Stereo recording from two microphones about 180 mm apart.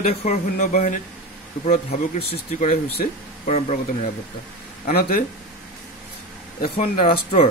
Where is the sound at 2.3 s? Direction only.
40° left (ahead or behind).